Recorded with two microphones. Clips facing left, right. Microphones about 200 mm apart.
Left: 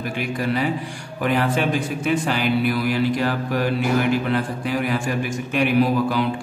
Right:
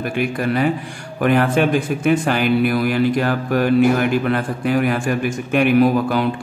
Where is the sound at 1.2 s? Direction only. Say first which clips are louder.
Right 5 dB; 55° right (ahead or behind).